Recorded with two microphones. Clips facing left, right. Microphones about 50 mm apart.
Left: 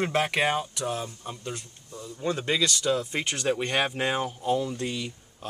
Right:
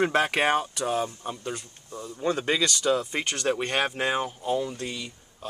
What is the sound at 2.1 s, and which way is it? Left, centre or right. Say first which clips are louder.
Speech: right 1 dB; centre.